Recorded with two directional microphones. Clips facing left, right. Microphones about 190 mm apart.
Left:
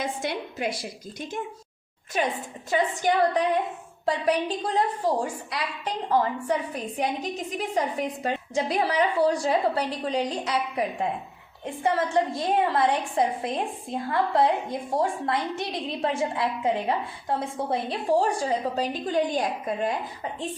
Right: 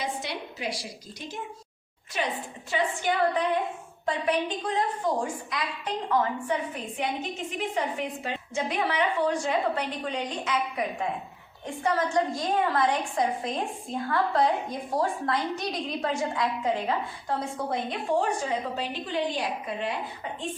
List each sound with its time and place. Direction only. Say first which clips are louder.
0.0 s a woman's voice: left 3 dB; 50° left (ahead or behind)
2.1 s a woman's voice: left 4 dB; 50° left (ahead or behind)